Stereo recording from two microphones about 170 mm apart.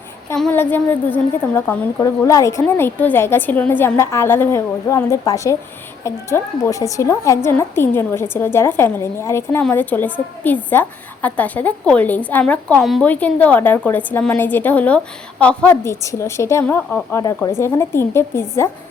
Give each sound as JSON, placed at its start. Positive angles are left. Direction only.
{"t": 0.3, "sound": "a woman's voice", "side_deg": 10}